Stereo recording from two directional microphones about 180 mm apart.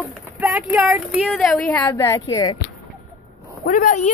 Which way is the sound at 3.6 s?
50° left (ahead or behind).